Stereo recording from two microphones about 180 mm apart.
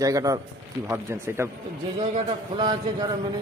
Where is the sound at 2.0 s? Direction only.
30° right (ahead or behind).